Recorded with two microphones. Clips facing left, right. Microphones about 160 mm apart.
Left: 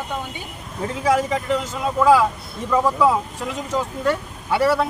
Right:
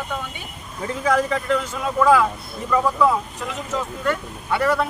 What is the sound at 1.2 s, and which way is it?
Speech, 20° left (ahead or behind).